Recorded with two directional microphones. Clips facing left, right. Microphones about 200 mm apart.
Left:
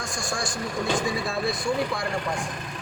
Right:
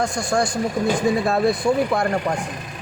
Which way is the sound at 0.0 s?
60° right (ahead or behind).